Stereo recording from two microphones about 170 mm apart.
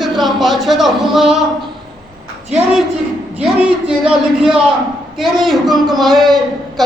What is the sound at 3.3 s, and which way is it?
A man's voice, 5° right (ahead or behind).